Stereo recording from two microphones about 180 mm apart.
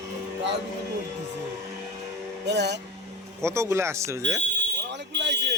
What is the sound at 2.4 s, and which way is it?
Speech, 75° right (ahead or behind).